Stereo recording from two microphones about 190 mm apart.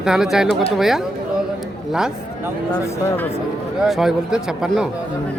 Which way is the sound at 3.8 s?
Centre (ahead or behind).